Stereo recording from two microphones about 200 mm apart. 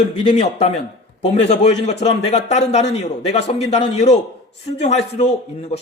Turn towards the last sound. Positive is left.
turn(degrees=30)  # may be behind; listen again after turning